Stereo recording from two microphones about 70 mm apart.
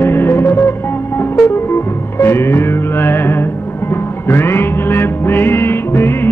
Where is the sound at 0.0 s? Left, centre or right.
Left.